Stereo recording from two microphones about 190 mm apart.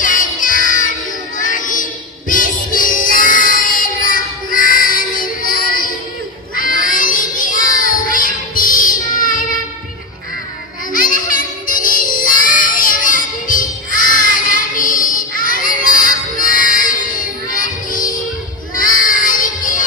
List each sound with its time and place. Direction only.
0.0 s child singing: 45° left (ahead or behind)
10.9 s child singing: 45° left (ahead or behind)
18.8 s music: 45° left (ahead or behind)